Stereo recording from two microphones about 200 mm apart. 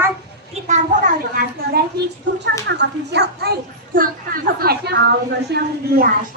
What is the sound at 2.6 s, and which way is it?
A child's voice, 60° right (ahead or behind).